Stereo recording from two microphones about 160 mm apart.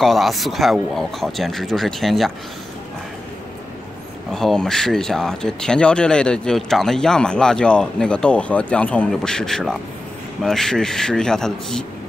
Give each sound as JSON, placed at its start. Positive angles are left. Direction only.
{"t": 0.0, "sound": "speech", "side_deg": 0}
{"t": 4.3, "sound": "speech", "side_deg": 0}